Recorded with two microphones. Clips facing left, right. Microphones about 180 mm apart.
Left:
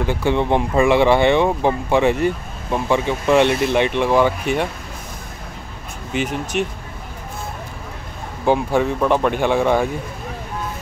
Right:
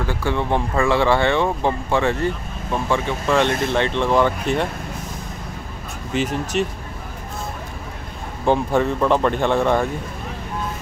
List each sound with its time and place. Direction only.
0.0 s speech: 20° left (ahead or behind)
6.1 s speech: centre (ahead or behind)
8.5 s speech: 5° left (ahead or behind)